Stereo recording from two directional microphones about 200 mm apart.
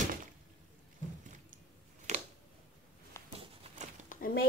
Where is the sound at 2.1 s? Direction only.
35° right (ahead or behind).